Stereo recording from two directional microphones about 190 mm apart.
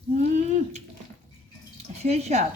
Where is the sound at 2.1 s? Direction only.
35° right (ahead or behind).